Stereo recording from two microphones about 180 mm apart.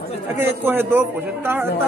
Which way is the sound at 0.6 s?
10° right (ahead or behind).